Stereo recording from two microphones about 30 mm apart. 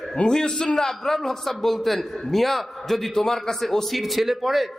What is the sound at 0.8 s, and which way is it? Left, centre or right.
A man's voice, centre.